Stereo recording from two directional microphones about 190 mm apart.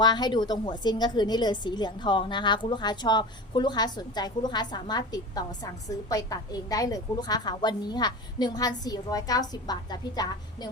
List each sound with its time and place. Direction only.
0.0 s a woman's voice: 20° left (ahead or behind)